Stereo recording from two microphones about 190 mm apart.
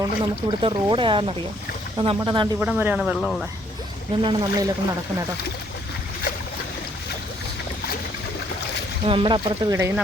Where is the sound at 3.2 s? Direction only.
5° left (ahead or behind).